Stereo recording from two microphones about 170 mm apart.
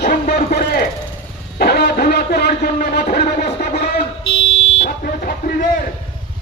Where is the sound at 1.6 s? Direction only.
70° left (ahead or behind).